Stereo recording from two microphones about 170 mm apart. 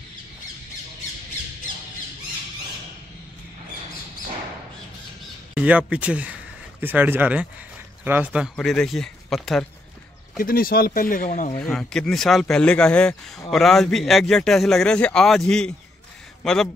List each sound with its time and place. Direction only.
5.5 s speech: 10° right (ahead or behind)
8.5 s a man's voice: 5° left (ahead or behind)
10.3 s speech: 60° left (ahead or behind); by 11.5 s 45° left (ahead or behind)
11.6 s a man's voice: 5° left (ahead or behind)